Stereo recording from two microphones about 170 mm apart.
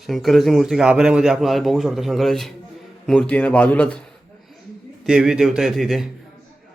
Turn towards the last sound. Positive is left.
turn(degrees=0)  # may be behind; listen again after turning